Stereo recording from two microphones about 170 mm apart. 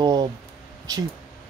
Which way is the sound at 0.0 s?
25° right (ahead or behind).